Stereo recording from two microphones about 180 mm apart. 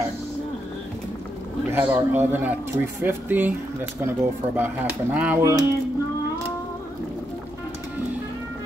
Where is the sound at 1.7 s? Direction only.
10° right (ahead or behind).